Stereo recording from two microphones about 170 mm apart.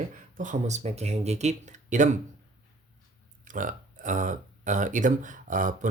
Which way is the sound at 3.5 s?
50° right (ahead or behind).